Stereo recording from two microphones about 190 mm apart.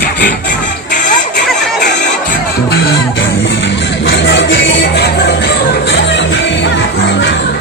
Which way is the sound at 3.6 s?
70° left (ahead or behind).